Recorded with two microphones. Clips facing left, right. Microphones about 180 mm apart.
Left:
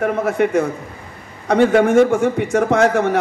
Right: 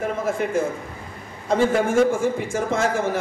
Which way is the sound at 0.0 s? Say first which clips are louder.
Left 6 dB; 65° left (ahead or behind).